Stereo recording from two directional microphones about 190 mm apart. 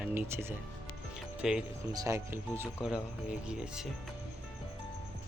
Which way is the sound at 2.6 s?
5° right (ahead or behind).